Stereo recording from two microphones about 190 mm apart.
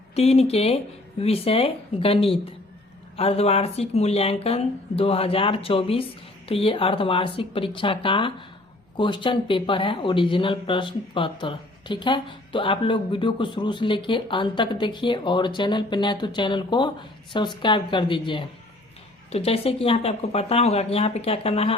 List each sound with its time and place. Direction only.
0.2 s speech: 30° left (ahead or behind)